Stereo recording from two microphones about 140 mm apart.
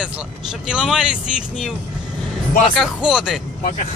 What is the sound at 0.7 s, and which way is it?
Speech, 5° right (ahead or behind).